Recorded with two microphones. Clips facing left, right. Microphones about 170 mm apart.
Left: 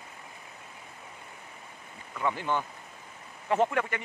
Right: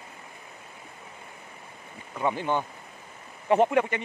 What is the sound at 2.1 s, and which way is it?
Speech, 20° right (ahead or behind).